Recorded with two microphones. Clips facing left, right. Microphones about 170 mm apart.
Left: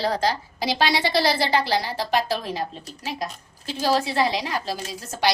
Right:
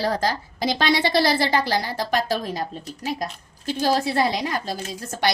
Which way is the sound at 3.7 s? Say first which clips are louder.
Right 1 dB; 45° right (ahead or behind).